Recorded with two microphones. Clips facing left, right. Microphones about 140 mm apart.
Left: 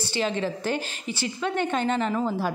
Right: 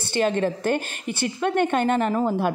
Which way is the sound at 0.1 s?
50° right (ahead or behind).